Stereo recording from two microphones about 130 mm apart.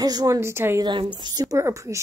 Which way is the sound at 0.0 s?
30° right (ahead or behind).